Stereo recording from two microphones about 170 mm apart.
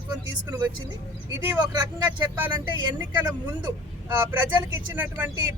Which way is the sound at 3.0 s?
10° right (ahead or behind).